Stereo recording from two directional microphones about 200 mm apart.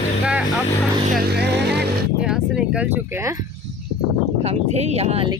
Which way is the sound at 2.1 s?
5° right (ahead or behind).